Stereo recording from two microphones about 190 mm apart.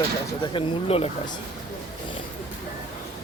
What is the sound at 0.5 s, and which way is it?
Speech, 30° left (ahead or behind).